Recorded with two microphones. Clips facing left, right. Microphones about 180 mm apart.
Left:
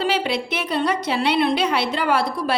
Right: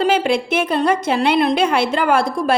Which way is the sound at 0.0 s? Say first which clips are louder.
Right 5 dB; 50° right (ahead or behind).